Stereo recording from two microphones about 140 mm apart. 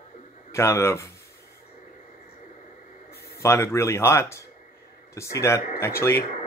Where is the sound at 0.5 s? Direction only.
20° left (ahead or behind).